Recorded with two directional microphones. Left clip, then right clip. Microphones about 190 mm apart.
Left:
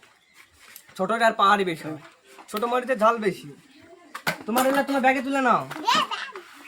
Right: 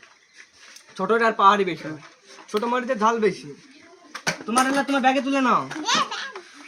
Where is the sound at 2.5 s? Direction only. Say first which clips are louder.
Right 1 dB; 25° left (ahead or behind).